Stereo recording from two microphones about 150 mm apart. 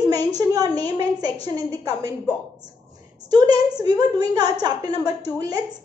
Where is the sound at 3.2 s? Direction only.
25° right (ahead or behind).